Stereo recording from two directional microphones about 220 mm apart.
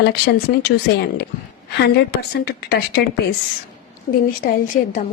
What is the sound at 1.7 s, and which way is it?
Speech, 45° left (ahead or behind).